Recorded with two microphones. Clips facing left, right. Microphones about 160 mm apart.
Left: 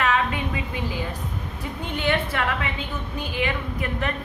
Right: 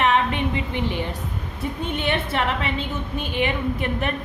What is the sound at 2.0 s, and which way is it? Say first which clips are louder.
A woman's voice: left 1 dB; 25° right (ahead or behind).